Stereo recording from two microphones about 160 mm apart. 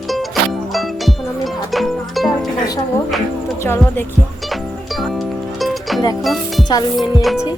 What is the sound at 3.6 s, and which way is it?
Speech, 15° left (ahead or behind).